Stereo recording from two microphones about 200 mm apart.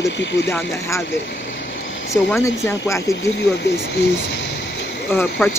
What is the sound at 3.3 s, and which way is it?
Speech, 55° left (ahead or behind).